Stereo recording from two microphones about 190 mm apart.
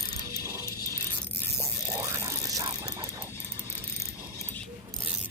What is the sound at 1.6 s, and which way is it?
Music, 15° right (ahead or behind).